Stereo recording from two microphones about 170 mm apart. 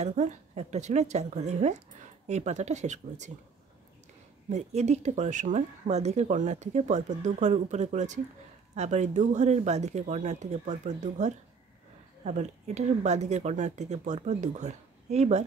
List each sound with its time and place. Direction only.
0.0 s speech: 40° right (ahead or behind)
4.5 s speech: 40° right (ahead or behind)